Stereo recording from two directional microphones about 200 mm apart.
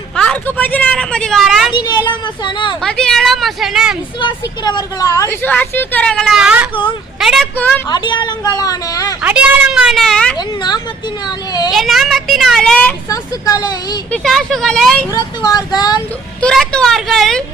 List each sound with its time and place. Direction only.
0.2 s a woman's voice: 5° left (ahead or behind)
1.7 s a woman's voice: 20° left (ahead or behind)
2.8 s a woman's voice: 5° left (ahead or behind)
4.2 s a woman's voice: 25° left (ahead or behind); by 7.4 s centre (ahead or behind)
7.9 s a woman's voice: 20° left (ahead or behind)
9.2 s a woman's voice: 5° right (ahead or behind)
10.3 s a woman's voice: 20° left (ahead or behind)
11.7 s a woman's voice: centre (ahead or behind)
13.1 s a woman's voice: 20° left (ahead or behind)
14.1 s a woman's voice: centre (ahead or behind)
15.1 s a woman's voice: 20° left (ahead or behind)
16.4 s a woman's voice: 5° left (ahead or behind)